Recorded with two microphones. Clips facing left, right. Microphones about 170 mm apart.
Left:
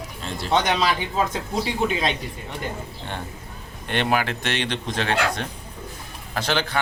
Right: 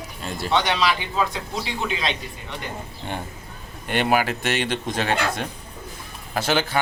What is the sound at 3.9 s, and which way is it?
A man's voice, 5° right (ahead or behind).